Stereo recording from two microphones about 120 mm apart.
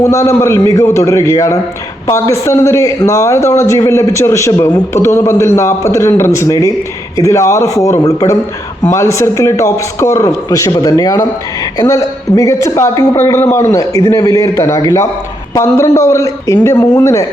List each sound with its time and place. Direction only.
0.0 s a man's voice: 25° left (ahead or behind)